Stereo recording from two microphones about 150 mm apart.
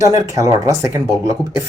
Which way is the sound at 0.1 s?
20° right (ahead or behind).